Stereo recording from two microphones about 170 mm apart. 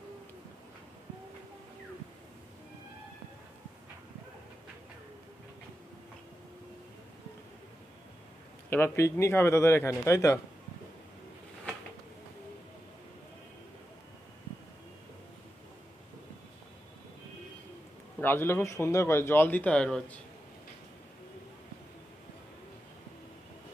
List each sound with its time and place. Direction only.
8.6 s speech: 10° left (ahead or behind)
18.2 s speech: 10° left (ahead or behind)